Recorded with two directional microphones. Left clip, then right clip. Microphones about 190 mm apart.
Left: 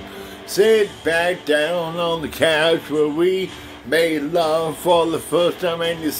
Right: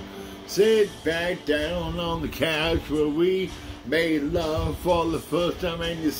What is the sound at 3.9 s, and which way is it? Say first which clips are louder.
Speech: left 5 dB; 20° right (ahead or behind).